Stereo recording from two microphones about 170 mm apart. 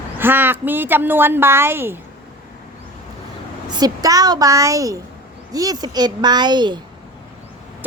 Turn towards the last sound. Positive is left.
turn(degrees=-25)  # may be behind; listen again after turning